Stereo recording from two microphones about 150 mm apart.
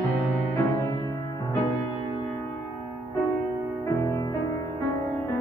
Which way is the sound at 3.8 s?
20° left (ahead or behind).